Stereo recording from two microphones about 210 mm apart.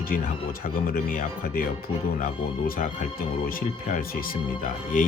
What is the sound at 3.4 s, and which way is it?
Speech, 45° left (ahead or behind).